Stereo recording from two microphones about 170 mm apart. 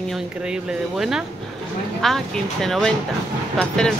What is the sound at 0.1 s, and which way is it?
Speech, centre (ahead or behind).